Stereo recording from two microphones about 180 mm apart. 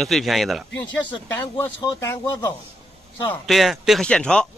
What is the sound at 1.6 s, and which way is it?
Speech, 15° left (ahead or behind).